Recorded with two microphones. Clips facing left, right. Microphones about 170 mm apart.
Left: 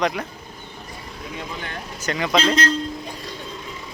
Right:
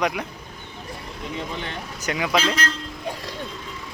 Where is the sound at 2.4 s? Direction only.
20° left (ahead or behind).